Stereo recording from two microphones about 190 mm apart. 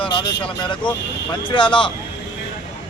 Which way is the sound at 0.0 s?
25° left (ahead or behind).